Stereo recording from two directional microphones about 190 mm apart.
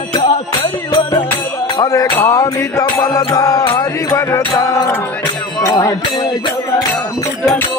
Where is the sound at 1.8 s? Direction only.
15° left (ahead or behind).